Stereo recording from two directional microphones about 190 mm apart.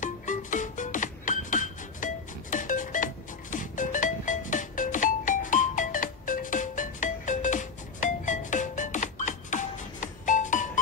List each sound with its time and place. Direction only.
0.0 s music: 40° left (ahead or behind)